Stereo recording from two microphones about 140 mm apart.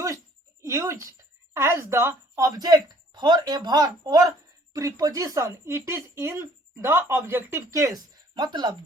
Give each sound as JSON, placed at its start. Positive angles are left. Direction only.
{"t": 0.6, "sound": "speech", "side_deg": -20}